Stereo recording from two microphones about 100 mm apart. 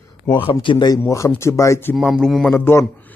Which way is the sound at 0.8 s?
35° left (ahead or behind).